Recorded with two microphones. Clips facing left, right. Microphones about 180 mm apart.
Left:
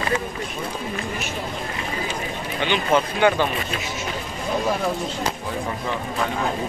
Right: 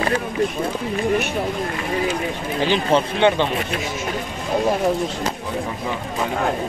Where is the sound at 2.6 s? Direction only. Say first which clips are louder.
Right 2 dB; 35° right (ahead or behind).